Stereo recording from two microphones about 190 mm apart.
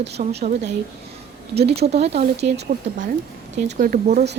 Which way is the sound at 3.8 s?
45° right (ahead or behind).